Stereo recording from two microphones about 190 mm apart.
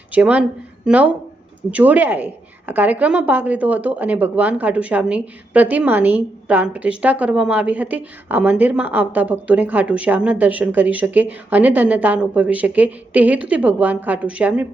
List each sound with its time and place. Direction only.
0.1 s a woman's voice: 10° right (ahead or behind)